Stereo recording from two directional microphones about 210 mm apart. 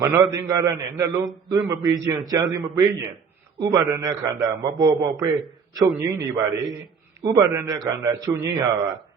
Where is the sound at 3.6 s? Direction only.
20° right (ahead or behind).